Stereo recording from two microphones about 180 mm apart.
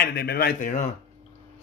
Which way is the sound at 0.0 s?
60° left (ahead or behind).